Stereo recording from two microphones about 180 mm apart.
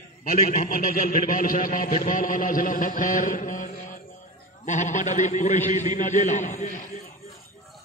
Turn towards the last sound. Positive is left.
turn(degrees=40)  # may be behind; listen again after turning